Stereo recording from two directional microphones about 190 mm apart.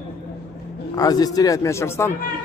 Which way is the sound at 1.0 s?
20° left (ahead or behind).